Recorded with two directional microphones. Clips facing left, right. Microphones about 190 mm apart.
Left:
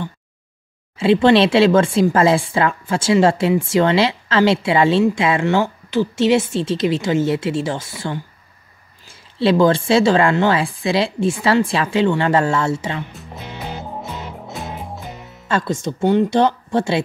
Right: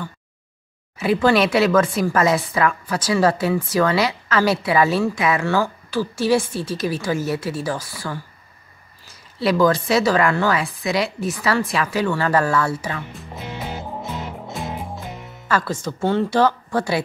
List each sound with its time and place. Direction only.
0.9 s speech: 25° left (ahead or behind)
14.4 s music: centre (ahead or behind)
15.4 s speech: 25° left (ahead or behind)